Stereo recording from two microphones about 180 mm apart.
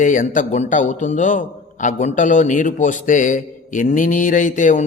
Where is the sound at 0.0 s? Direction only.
45° left (ahead or behind).